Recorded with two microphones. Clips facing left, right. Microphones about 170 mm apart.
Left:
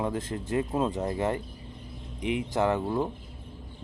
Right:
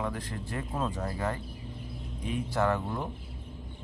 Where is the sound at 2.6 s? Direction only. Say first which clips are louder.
Left 3 dB; 20° left (ahead or behind).